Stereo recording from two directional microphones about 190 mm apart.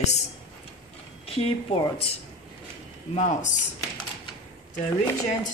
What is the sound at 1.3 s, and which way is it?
Speech, 30° left (ahead or behind).